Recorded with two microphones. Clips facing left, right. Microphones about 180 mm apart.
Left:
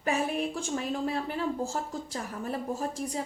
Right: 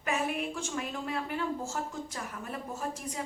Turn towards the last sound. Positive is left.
turn(degrees=35)  # may be behind; listen again after turning